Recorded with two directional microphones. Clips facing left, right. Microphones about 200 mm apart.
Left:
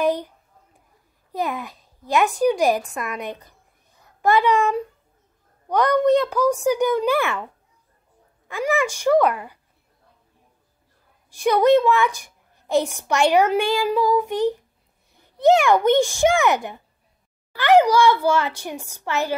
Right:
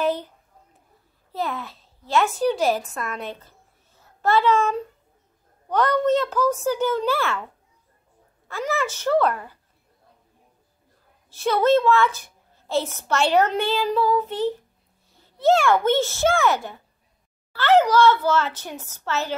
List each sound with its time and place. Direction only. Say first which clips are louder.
0.0 s a sound: left 2 dB; 15° left (ahead or behind)
1.3 s a child's voice: left 2 dB; 15° left (ahead or behind)
8.5 s a woman's voice: left 4 dB; 15° left (ahead or behind)
11.2 s a woman's voice: left 3 dB; 15° left (ahead or behind)